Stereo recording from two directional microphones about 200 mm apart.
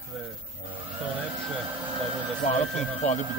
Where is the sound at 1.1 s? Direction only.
5° right (ahead or behind).